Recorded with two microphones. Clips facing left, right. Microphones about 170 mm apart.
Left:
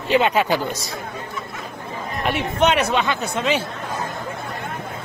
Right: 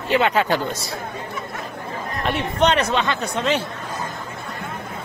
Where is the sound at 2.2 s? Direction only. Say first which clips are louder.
Even; 5° left (ahead or behind).